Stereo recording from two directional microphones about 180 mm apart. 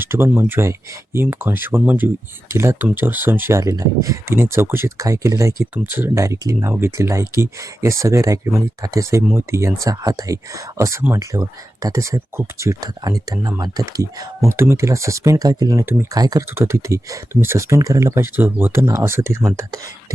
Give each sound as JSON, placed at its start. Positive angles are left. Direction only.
{"t": 0.0, "sound": "speech", "side_deg": -15}